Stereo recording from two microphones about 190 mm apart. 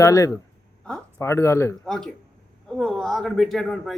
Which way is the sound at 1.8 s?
Centre (ahead or behind).